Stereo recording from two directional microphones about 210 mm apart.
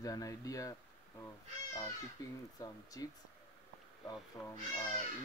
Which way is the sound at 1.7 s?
15° left (ahead or behind).